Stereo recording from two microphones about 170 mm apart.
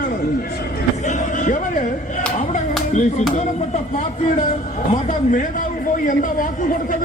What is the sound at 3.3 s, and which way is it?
A man's voice, 40° left (ahead or behind).